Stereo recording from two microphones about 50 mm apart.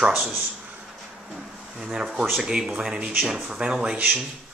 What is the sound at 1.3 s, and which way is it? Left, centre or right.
Speech, centre.